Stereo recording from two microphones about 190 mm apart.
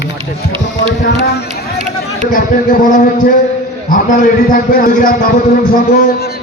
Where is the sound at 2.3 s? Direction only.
45° left (ahead or behind).